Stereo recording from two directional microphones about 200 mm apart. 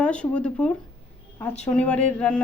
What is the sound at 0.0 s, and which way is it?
Speech, 5° left (ahead or behind).